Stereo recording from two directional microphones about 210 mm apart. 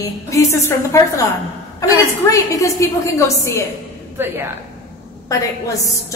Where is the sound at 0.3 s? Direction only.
15° left (ahead or behind).